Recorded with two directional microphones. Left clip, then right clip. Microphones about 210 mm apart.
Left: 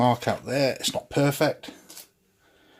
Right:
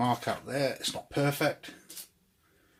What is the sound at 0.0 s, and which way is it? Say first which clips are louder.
Speech: left 7 dB; 45° left (ahead or behind).